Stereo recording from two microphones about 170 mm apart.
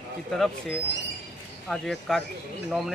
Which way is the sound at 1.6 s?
Centre (ahead or behind).